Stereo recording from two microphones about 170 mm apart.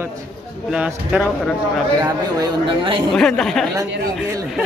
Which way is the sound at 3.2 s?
5° left (ahead or behind).